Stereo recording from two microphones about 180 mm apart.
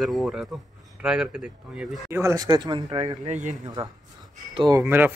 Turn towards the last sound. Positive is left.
turn(degrees=-10)  # may be behind; listen again after turning